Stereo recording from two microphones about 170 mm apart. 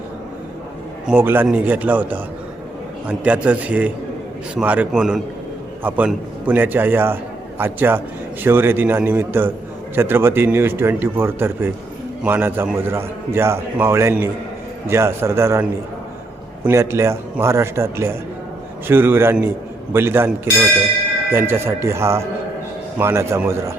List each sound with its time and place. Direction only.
1.0 s a man's voice: 10° right (ahead or behind)
16.6 s a man's voice: 15° right (ahead or behind)